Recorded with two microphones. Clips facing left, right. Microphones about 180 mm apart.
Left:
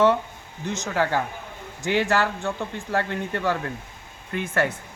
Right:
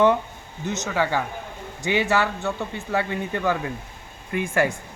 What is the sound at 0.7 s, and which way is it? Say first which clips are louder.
Speech: even; 5° left (ahead or behind).